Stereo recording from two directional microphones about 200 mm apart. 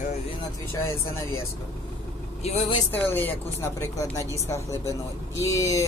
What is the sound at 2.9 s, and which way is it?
Speech, 10° left (ahead or behind).